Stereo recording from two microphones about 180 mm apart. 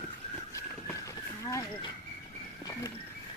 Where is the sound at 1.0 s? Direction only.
20° left (ahead or behind).